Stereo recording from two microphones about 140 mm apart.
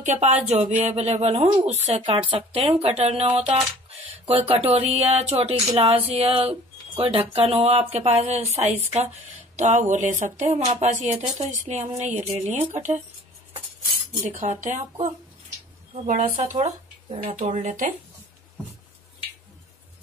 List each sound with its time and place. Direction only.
0.0 s speech: 55° right (ahead or behind)
14.2 s speech: 60° right (ahead or behind)
16.4 s speech: 55° right (ahead or behind)